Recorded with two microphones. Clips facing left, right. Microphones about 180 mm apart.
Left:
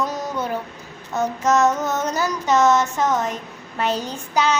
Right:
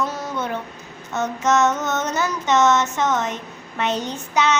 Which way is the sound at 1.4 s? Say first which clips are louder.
Even; 35° left (ahead or behind).